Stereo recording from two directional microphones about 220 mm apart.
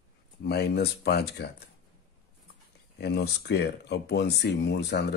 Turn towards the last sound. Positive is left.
turn(degrees=50)  # may be behind; listen again after turning